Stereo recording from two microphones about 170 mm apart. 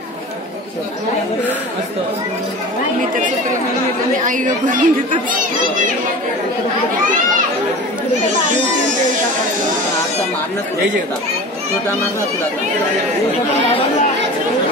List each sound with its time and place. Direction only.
4.3 s speech: 50° right (ahead or behind)